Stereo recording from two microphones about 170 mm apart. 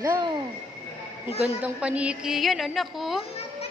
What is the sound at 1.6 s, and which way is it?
A woman's voice, 5° right (ahead or behind).